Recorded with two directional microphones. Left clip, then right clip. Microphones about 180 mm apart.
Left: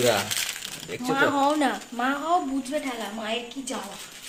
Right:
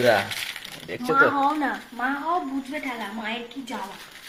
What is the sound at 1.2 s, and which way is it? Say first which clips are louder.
Speech: right 1 dB; 40° left (ahead or behind).